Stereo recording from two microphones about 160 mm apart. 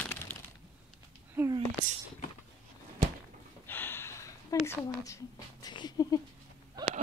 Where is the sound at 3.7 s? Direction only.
15° left (ahead or behind).